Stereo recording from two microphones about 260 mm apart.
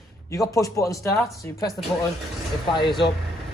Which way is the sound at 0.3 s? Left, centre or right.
Centre.